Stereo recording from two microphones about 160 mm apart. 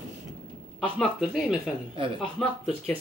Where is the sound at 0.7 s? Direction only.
Centre (ahead or behind).